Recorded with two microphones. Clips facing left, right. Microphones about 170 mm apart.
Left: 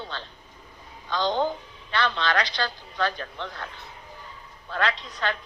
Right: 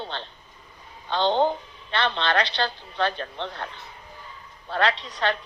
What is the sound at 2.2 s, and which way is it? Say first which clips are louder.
Speech: right 2 dB; 60° right (ahead or behind).